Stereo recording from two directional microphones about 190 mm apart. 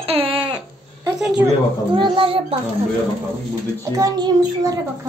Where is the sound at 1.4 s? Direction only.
25° right (ahead or behind).